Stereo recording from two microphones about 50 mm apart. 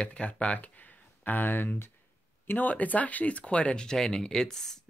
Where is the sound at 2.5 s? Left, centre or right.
Left.